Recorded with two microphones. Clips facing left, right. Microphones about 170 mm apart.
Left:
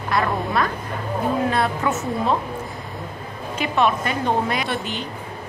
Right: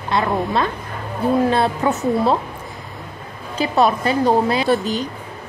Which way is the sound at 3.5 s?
35° right (ahead or behind).